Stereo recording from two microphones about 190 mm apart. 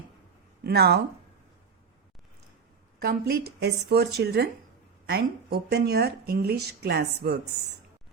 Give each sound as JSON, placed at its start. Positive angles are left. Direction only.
{"t": 0.6, "sound": "speech", "side_deg": -55}
{"t": 3.0, "sound": "a woman's voice", "side_deg": -55}